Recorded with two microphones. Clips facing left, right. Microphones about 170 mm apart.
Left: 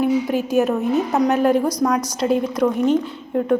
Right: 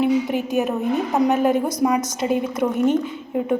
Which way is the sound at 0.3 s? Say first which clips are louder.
Left 3 dB; centre (ahead or behind).